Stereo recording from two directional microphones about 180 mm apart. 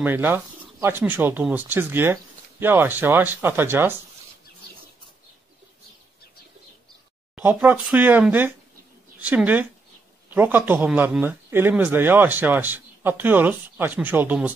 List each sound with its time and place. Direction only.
0.0 s speech: 10° right (ahead or behind)
7.3 s speech: 10° right (ahead or behind)